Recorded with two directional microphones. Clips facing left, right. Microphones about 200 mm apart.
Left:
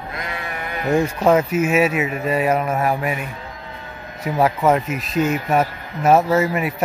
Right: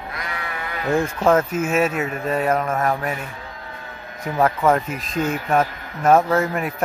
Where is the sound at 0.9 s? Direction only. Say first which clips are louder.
Left 2 dB; 10° left (ahead or behind).